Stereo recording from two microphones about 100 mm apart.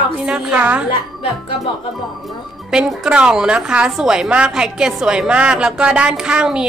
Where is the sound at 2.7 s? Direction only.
10° right (ahead or behind).